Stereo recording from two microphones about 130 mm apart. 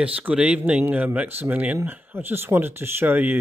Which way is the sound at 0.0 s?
10° right (ahead or behind).